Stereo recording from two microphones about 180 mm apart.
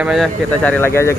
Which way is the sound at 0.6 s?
10° left (ahead or behind).